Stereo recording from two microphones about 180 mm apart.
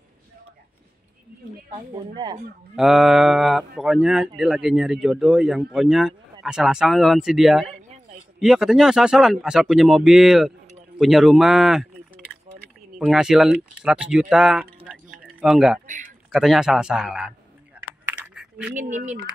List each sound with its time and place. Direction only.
1.7 s speech: 25° right (ahead or behind)
2.7 s speech: 5° right (ahead or behind)
12.3 s keys jangling: 5° right (ahead or behind)
13.0 s speech: 5° right (ahead or behind)
18.0 s typing: 10° right (ahead or behind)
18.8 s speech: 45° right (ahead or behind)